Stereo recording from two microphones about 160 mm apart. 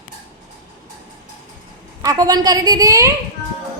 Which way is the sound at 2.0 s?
20° right (ahead or behind).